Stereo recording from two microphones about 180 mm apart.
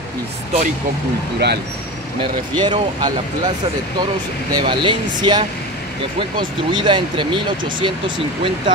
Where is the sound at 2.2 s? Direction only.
25° right (ahead or behind).